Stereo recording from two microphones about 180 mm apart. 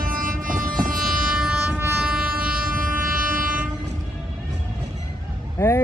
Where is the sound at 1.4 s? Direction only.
5° right (ahead or behind).